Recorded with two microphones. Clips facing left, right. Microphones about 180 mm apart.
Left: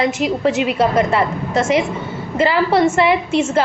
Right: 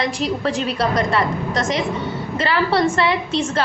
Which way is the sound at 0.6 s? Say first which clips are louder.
Left 4 dB; 20° left (ahead or behind).